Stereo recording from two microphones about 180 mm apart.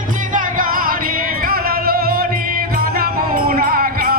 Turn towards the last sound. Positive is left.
turn(degrees=-55)  # may be behind; listen again after turning